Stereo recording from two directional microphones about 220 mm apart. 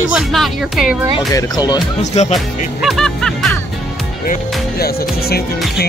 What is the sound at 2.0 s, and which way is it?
Speech, 30° left (ahead or behind).